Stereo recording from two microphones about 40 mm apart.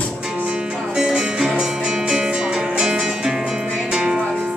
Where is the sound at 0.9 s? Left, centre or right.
Centre.